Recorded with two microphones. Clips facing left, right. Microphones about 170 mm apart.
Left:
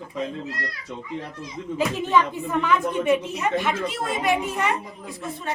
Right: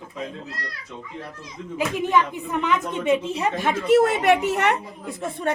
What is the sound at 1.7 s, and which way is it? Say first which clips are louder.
A woman's voice: even; 15° right (ahead or behind).